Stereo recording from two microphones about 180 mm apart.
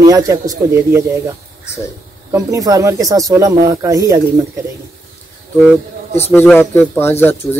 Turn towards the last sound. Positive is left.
turn(degrees=10)  # may be behind; listen again after turning